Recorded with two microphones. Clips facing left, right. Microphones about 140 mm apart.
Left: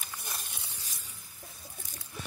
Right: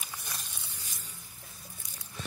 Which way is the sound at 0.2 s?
50° left (ahead or behind).